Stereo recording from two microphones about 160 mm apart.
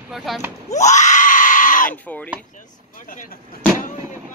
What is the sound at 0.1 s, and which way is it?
Speech, centre (ahead or behind).